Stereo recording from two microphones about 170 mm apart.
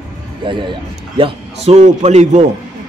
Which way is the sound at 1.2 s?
40° right (ahead or behind).